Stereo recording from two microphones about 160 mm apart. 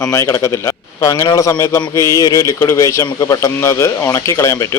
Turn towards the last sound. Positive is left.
turn(degrees=15)  # may be behind; listen again after turning